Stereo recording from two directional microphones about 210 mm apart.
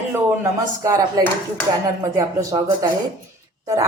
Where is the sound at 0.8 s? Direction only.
15° right (ahead or behind).